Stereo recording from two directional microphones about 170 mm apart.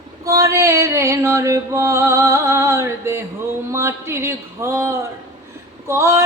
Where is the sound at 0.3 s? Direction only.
20° right (ahead or behind).